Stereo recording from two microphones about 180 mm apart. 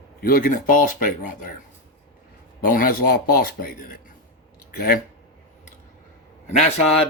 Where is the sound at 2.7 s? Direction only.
55° left (ahead or behind).